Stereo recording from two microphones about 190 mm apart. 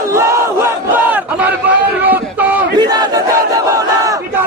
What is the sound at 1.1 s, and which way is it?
Crowd, 10° right (ahead or behind).